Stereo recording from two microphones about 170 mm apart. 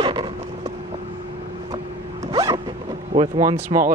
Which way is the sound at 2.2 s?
20° right (ahead or behind).